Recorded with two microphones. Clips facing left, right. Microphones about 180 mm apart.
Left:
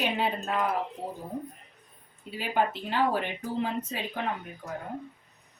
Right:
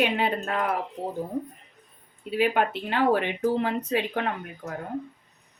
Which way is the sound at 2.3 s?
65° right (ahead or behind).